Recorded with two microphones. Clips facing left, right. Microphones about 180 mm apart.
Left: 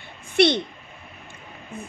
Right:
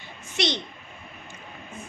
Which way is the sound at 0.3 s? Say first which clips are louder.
Left 9 dB; 55° left (ahead or behind).